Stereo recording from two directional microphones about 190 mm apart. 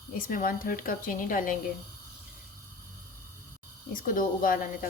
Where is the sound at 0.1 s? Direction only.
50° left (ahead or behind).